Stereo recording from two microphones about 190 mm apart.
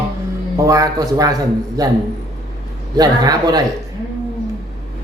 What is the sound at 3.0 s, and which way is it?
Speech, 20° right (ahead or behind).